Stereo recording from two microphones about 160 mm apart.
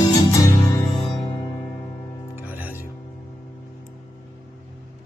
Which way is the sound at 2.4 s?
10° right (ahead or behind).